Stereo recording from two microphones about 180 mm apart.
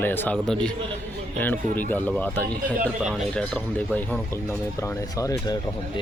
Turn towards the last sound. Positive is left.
turn(degrees=20)  # may be behind; listen again after turning